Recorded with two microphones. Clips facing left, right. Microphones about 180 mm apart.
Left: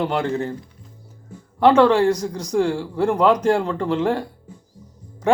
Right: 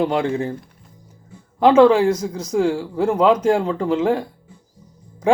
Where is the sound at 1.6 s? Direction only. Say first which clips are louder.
Right 2 dB; 10° right (ahead or behind).